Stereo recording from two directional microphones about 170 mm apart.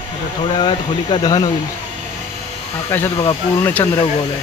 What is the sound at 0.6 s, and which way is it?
Speech, 30° left (ahead or behind).